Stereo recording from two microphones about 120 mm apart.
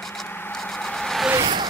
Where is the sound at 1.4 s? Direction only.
40° right (ahead or behind).